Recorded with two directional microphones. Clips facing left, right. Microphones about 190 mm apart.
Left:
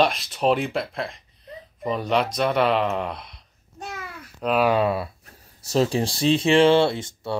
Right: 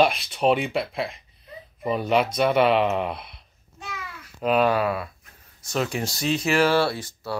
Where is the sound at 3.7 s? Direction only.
45° left (ahead or behind).